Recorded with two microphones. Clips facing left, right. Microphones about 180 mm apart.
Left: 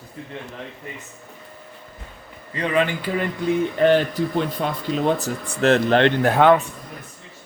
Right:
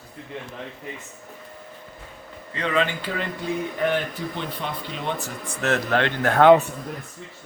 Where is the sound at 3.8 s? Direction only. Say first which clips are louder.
Left 8 dB; 35° left (ahead or behind); by 6.4 s 20° left (ahead or behind).